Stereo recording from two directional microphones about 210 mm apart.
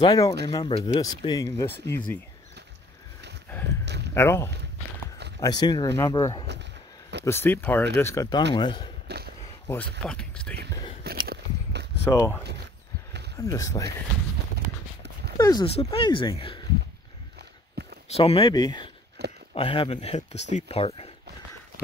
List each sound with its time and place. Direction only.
0.0 s speech: 20° left (ahead or behind)
3.6 s a sound: 55° right (ahead or behind)
4.1 s speech: 10° left (ahead or behind)
9.0 s a sound: 50° right (ahead or behind)
9.7 s speech: 5° left (ahead or behind)
10.7 s whispering: 20° left (ahead or behind)
11.2 s biting: 55° right (ahead or behind)
12.0 s speech: 10° left (ahead or behind)
15.3 s speech: 20° left (ahead or behind)
17.8 s a sound: 50° right (ahead or behind)
18.1 s speech: 30° left (ahead or behind)
19.2 s a sound: 50° right (ahead or behind)
19.5 s speech: 25° left (ahead or behind)